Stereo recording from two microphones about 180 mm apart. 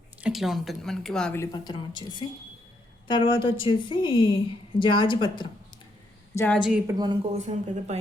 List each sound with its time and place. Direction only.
0.2 s speech: 5° right (ahead or behind)
1.4 s a woman's voice: 25° left (ahead or behind)
6.3 s a woman's voice: 10° left (ahead or behind)
6.8 s speech: 20° right (ahead or behind)
7.3 s speech: 40° right (ahead or behind)